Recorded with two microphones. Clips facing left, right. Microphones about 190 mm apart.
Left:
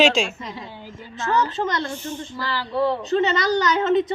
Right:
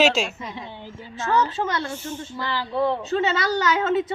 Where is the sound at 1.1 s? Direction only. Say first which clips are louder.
Even; 10° right (ahead or behind).